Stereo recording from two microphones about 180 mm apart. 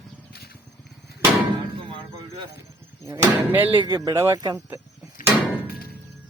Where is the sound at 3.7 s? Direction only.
25° right (ahead or behind).